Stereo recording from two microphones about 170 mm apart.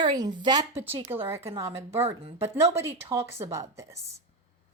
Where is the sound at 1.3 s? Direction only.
35° right (ahead or behind).